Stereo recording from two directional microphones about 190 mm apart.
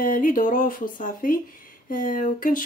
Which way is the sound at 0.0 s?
45° left (ahead or behind).